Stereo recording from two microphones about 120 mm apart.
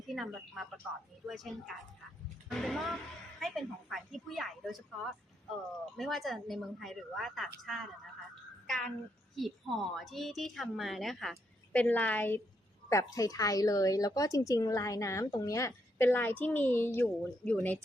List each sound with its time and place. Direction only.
0.1 s speech: centre (ahead or behind)
9.3 s speech: centre (ahead or behind)
11.7 s a woman's voice: 15° left (ahead or behind)
12.9 s a woman's voice: 25° left (ahead or behind)